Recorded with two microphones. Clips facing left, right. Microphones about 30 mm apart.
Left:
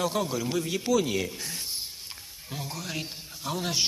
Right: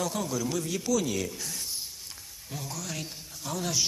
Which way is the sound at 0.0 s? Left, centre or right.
Left.